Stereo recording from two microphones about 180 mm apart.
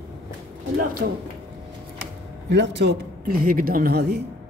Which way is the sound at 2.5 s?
75° right (ahead or behind).